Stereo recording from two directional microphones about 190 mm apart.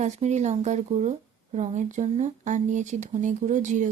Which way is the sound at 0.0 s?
40° right (ahead or behind).